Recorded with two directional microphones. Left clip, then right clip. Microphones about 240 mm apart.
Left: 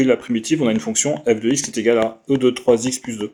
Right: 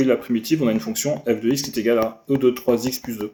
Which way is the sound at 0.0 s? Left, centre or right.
Left.